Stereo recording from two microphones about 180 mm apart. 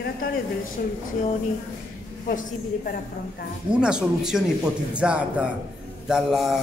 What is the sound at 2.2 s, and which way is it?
Speech, 50° left (ahead or behind).